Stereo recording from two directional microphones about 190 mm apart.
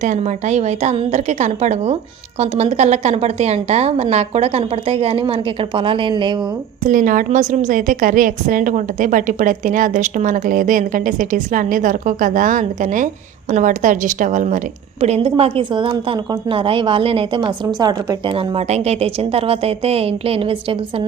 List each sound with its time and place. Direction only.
0.0 s a woman's voice: 40° right (ahead or behind)
6.8 s a woman's voice: 45° right (ahead or behind); by 21.0 s 30° right (ahead or behind)